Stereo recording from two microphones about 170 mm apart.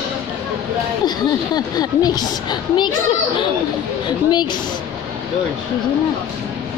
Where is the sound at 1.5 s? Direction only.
25° left (ahead or behind).